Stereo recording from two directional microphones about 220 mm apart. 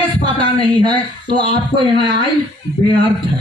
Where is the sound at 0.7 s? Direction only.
20° right (ahead or behind).